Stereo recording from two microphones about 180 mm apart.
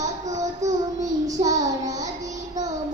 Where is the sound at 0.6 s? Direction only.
20° right (ahead or behind).